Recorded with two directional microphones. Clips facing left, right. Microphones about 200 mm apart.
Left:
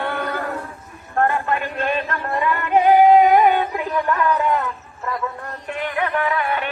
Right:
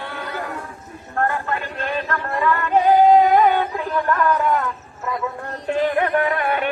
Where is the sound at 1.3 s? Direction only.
20° left (ahead or behind).